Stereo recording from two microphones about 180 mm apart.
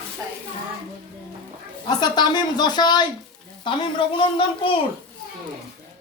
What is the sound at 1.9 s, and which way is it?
Speech, 25° left (ahead or behind).